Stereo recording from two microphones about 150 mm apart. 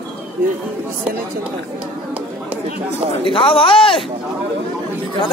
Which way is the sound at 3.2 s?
35° left (ahead or behind).